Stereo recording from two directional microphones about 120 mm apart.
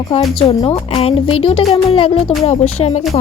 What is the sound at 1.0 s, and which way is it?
Speech, 50° left (ahead or behind).